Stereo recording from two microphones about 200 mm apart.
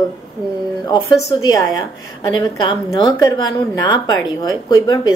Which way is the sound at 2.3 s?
20° left (ahead or behind).